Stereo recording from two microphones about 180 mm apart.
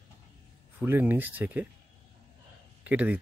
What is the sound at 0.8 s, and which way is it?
Speech, 10° right (ahead or behind).